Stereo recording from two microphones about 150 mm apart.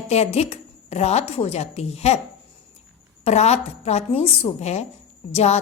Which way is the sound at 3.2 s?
45° left (ahead or behind).